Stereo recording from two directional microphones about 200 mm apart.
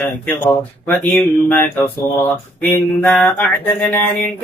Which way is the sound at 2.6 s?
10° left (ahead or behind).